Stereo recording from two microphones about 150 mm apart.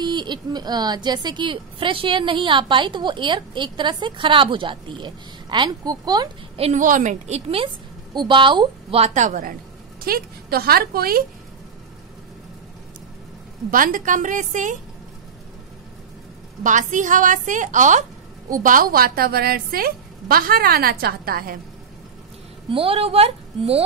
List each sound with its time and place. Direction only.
0.0 s a woman's voice: 30° right (ahead or behind)
6.5 s a woman's voice: 40° right (ahead or behind)
6.8 s a woman's voice: 60° right (ahead or behind)
7.6 s a woman's voice: 30° right (ahead or behind); by 9.5 s 55° right (ahead or behind)
10.0 s a woman's voice: 85° right
13.7 s a woman's voice: 65° right (ahead or behind)
16.6 s a woman's voice: 55° right (ahead or behind); by 21.5 s 80° right
22.7 s a woman's voice: 40° right (ahead or behind)